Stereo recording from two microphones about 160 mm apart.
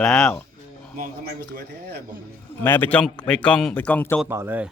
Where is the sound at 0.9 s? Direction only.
70° right (ahead or behind); by 2.0 s 90° right.